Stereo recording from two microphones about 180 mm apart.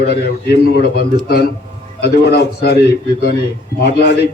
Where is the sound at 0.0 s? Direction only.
65° left (ahead or behind).